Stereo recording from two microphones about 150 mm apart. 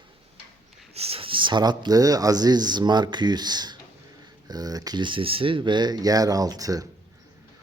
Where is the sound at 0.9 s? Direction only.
40° right (ahead or behind).